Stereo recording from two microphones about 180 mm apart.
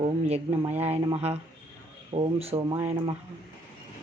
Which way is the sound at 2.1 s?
30° right (ahead or behind).